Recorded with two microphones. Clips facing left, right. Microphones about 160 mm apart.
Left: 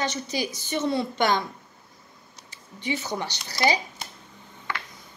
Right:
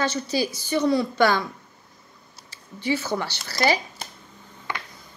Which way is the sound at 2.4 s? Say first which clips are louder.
Right 5 dB; 20° left (ahead or behind).